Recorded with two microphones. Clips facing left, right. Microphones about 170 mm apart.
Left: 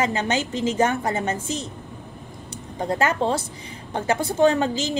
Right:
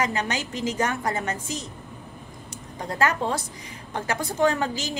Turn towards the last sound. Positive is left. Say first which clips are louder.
# left 5 dB
turn(degrees=25)  # may be behind; listen again after turning